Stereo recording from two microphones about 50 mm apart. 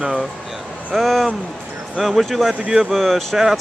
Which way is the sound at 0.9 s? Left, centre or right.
Centre.